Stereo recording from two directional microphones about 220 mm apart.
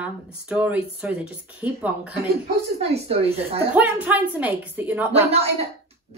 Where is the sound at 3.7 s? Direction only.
5° right (ahead or behind).